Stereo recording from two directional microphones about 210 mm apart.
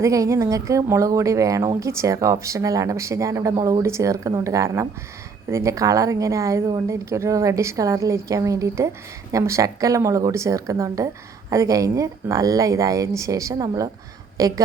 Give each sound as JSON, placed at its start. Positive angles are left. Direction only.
{"t": 0.0, "sound": "a woman's voice", "side_deg": -15}